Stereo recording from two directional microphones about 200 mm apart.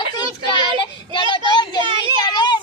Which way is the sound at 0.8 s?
25° left (ahead or behind).